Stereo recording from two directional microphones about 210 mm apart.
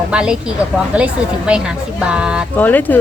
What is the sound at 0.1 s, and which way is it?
Speech, 5° right (ahead or behind).